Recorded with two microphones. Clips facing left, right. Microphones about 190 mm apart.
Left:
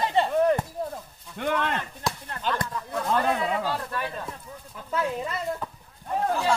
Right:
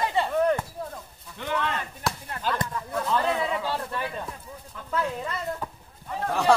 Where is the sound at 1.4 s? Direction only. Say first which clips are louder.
Left 6 dB; 55° left (ahead or behind).